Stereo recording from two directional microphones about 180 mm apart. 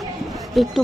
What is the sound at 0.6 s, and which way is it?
Speech, centre (ahead or behind).